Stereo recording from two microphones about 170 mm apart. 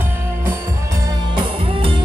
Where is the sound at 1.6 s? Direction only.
30° right (ahead or behind).